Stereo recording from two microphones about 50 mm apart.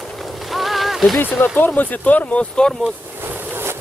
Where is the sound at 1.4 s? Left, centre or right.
Left.